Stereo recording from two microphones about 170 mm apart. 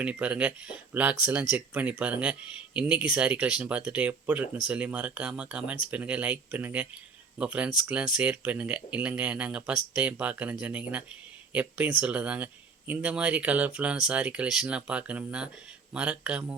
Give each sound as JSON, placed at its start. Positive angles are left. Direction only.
{"t": 0.0, "sound": "speech", "side_deg": -5}